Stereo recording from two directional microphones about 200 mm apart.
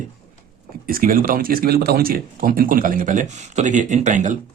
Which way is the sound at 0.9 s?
45° right (ahead or behind).